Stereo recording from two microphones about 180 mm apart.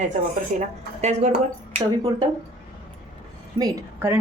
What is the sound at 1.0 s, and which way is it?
Speech, 40° right (ahead or behind).